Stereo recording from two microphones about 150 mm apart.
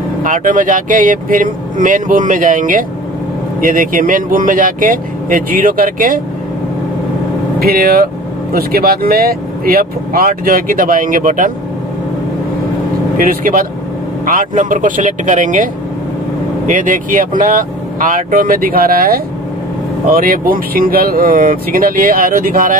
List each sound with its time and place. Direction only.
0.2 s speech: 60° right (ahead or behind)
7.6 s speech: 80° right; by 11.5 s 65° right (ahead or behind)
13.3 s speech: 70° right (ahead or behind)